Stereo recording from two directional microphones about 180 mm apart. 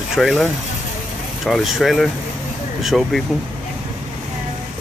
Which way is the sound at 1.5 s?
Centre (ahead or behind).